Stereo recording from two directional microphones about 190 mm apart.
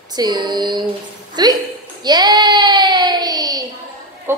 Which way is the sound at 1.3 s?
20° right (ahead or behind).